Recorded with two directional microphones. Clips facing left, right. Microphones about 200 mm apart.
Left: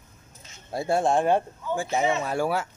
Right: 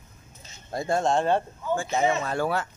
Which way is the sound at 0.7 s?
10° left (ahead or behind).